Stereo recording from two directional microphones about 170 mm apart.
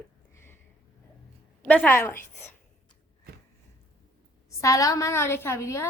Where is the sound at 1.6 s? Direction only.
10° left (ahead or behind).